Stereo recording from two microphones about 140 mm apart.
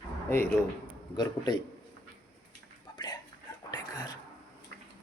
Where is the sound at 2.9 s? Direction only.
35° left (ahead or behind).